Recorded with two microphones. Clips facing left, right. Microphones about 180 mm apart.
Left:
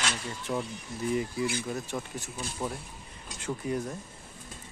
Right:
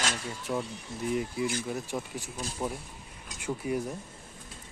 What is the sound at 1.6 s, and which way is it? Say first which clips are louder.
Speech: even; 10° right (ahead or behind).